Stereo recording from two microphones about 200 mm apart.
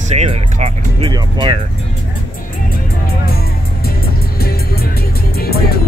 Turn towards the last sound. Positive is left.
turn(degrees=50)  # may be behind; listen again after turning